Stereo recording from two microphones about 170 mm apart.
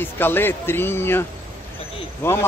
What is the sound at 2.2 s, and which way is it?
Speech, 15° left (ahead or behind).